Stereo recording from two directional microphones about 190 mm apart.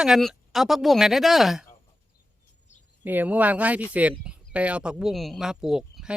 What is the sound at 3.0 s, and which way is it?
Speech, 10° right (ahead or behind).